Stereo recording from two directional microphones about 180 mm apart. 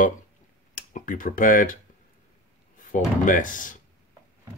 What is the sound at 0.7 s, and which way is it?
Speech, 50° left (ahead or behind).